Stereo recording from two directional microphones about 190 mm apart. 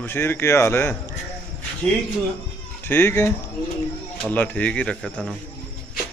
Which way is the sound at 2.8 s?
10° left (ahead or behind).